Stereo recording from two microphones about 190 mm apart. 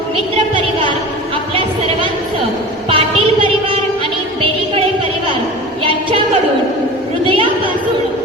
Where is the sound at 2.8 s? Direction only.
30° right (ahead or behind).